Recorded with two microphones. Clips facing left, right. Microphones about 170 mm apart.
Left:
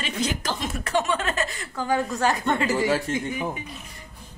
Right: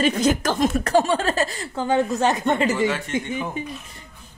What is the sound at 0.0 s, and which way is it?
Speech, 45° right (ahead or behind).